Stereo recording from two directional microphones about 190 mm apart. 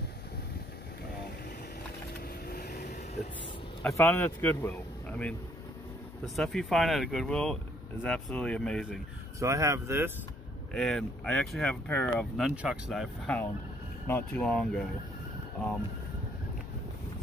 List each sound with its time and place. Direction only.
2.1 s a sound: 55° left (ahead or behind)
3.9 s a man's voice: 10° left (ahead or behind)
9.4 s speech: 15° right (ahead or behind)
10.7 s speech: 5° left (ahead or behind)
14.0 s speech: 10° left (ahead or behind)